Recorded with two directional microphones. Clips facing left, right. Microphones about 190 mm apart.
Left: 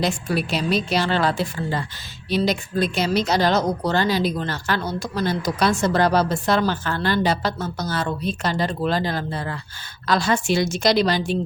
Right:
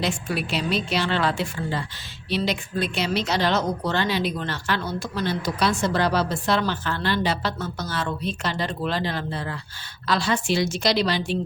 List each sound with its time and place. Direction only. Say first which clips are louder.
0.0 s a woman's voice: left 3 dB; 40° left (ahead or behind)